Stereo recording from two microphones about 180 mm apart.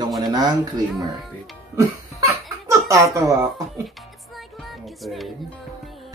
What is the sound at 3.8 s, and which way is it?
Music, centre (ahead or behind).